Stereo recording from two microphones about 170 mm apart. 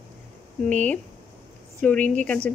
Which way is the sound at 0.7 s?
10° left (ahead or behind).